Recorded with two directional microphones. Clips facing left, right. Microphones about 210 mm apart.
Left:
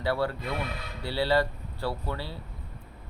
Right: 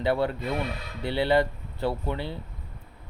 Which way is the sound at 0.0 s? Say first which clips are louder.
Right 3 dB; 20° right (ahead or behind).